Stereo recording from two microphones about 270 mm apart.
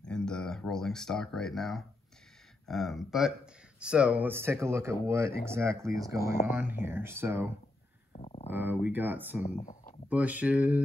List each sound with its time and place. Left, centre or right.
0.0 s speech: centre
6.1 s speech: left
6.4 s speech: centre
8.1 s a sound: left
8.5 s speech: centre
9.6 s speech: left
10.0 s speech: centre